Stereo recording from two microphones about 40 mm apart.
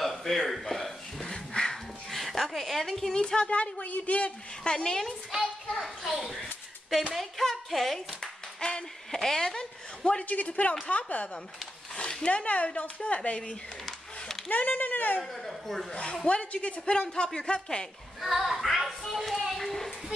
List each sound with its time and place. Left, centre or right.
0.0 s a sound: centre
2.0 s speech: centre
3.2 s speech: left
4.6 s speech: left
5.4 s speech: centre
8.5 s speech: left
9.1 s a woman's voice: centre
10.2 s speech: left
11.9 s speech: left
13.8 s a sound: centre
14.5 s speech: left
15.3 s speech: centre
15.9 s speech: left
18.2 s a sound: centre